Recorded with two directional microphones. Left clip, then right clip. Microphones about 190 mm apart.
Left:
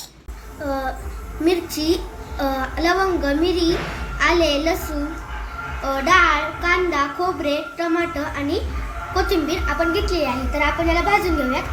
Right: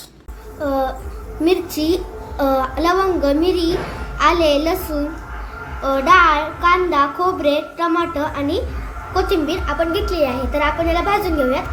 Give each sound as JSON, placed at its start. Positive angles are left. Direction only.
{"t": 1.5, "sound": "a child's voice", "side_deg": -45}
{"t": 5.9, "sound": "a child's voice", "side_deg": -45}